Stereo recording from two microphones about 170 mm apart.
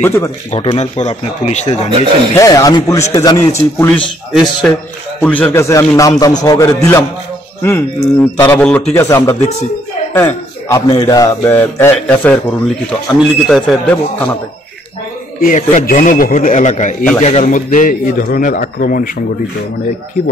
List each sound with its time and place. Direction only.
0.0 s a man's voice: 15° left (ahead or behind)
0.5 s speech: 35° left (ahead or behind)
2.3 s a man's voice: 20° left (ahead or behind)
4.3 s a man's voice: centre (ahead or behind)
15.4 s a man's voice: 50° left (ahead or behind)